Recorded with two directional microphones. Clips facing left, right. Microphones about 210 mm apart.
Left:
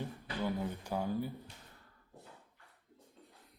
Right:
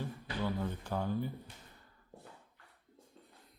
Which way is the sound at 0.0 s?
10° left (ahead or behind).